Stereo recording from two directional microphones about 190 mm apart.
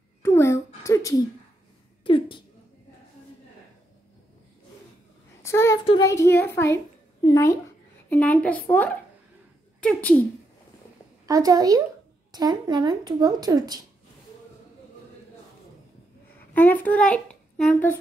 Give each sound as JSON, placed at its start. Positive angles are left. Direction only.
{"t": 0.2, "sound": "a sound", "side_deg": 15}
{"t": 5.4, "sound": "a child's voice", "side_deg": 15}
{"t": 11.2, "sound": "speech", "side_deg": -20}
{"t": 16.5, "sound": "a child's voice", "side_deg": 10}